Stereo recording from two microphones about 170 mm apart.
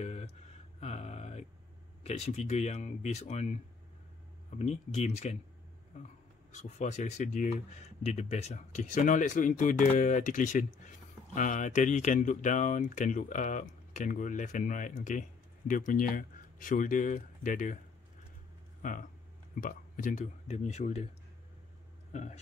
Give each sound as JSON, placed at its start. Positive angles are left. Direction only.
{"t": 0.0, "sound": "a sound", "side_deg": 40}
{"t": 2.0, "sound": "speech", "side_deg": 40}
{"t": 4.6, "sound": "speech", "side_deg": 40}
{"t": 6.5, "sound": "speech", "side_deg": 45}
{"t": 18.8, "sound": "speech", "side_deg": 50}
{"t": 22.1, "sound": "speech", "side_deg": 40}